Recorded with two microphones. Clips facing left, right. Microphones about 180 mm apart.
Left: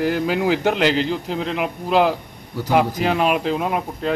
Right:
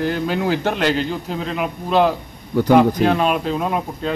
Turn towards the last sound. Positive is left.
turn(degrees=5)  # may be behind; listen again after turning